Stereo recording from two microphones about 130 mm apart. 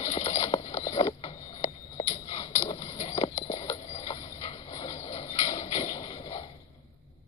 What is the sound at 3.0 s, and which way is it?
Vehicle, 55° left (ahead or behind).